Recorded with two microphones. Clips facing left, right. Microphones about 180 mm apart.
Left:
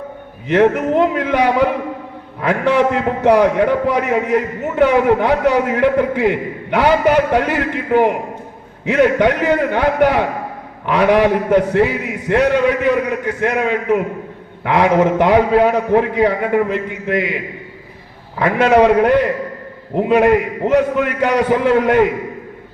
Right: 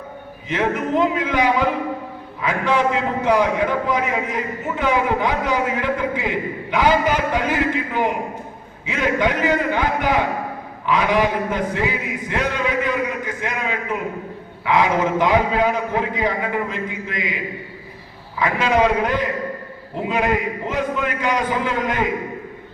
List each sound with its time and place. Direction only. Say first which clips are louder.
0.4 s a man's voice: left 8 dB; 60° left (ahead or behind)